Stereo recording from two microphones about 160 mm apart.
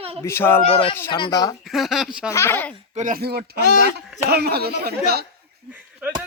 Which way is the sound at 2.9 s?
50° right (ahead or behind).